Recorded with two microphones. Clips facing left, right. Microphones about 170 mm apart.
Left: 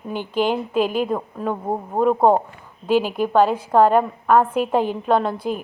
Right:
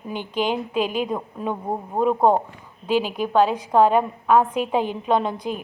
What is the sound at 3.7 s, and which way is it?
Speech, centre (ahead or behind).